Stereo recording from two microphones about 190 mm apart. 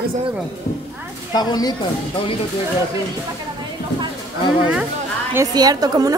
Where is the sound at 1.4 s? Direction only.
20° left (ahead or behind).